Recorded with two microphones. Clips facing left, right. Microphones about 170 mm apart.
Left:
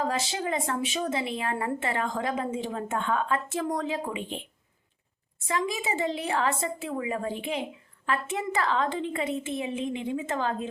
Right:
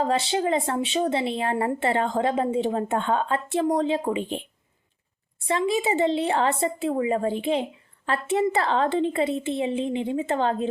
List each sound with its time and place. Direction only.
0.0 s speech: 30° right (ahead or behind)
5.5 s speech: 30° right (ahead or behind)